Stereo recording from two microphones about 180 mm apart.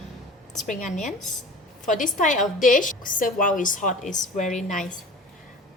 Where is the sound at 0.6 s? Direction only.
45° left (ahead or behind).